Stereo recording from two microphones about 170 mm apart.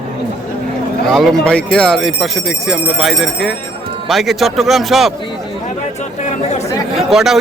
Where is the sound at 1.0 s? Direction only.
Centre (ahead or behind).